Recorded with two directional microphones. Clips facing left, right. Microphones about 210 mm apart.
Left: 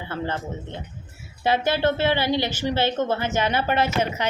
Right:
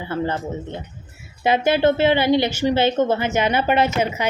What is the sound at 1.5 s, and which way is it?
A woman's voice, 15° right (ahead or behind).